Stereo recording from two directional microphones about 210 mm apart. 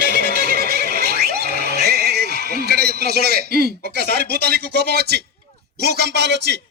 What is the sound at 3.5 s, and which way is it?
Speech, 45° left (ahead or behind).